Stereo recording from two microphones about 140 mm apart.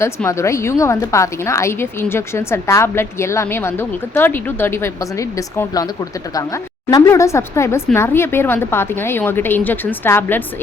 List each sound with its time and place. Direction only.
0.0 s a woman's voice: 20° left (ahead or behind)